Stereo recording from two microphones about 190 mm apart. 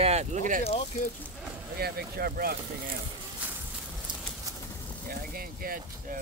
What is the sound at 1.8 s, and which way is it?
Speech, 55° right (ahead or behind).